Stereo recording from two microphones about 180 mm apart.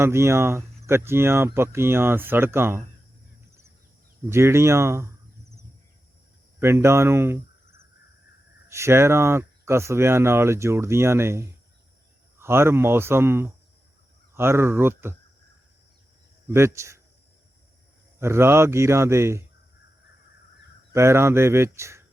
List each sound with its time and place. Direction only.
0.0 s speech: 15° right (ahead or behind)
4.3 s speech: 15° right (ahead or behind)
6.6 s speech: 15° right (ahead or behind)
16.5 s speech: 15° right (ahead or behind)
18.2 s speech: 15° right (ahead or behind)
20.9 s speech: 15° right (ahead or behind)